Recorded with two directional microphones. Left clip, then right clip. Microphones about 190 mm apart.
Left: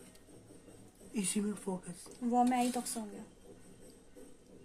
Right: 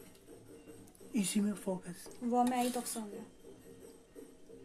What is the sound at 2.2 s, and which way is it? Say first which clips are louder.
Speech: left 1 dB; centre (ahead or behind).